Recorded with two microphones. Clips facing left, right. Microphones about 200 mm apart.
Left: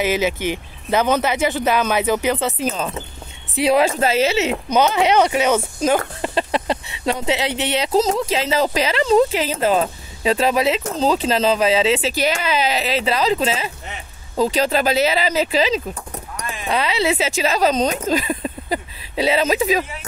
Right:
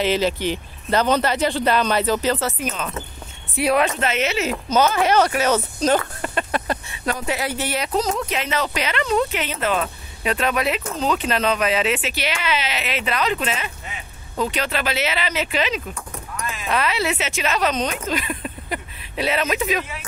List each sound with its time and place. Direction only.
0.0 s speech: 10° left (ahead or behind)
2.6 s speech: 30° left (ahead or behind); by 5.9 s 10° left (ahead or behind)
6.2 s speech: 25° left (ahead or behind)